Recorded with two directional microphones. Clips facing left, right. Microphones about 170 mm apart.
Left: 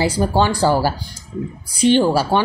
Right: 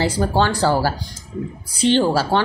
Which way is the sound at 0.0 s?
15° left (ahead or behind).